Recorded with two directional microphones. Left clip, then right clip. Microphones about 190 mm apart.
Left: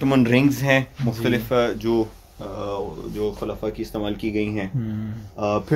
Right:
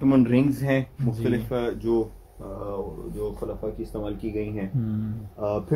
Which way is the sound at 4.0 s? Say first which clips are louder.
Left 5 dB; 40° left (ahead or behind).